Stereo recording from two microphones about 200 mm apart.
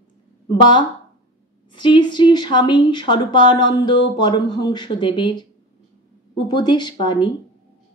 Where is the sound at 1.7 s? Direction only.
25° left (ahead or behind).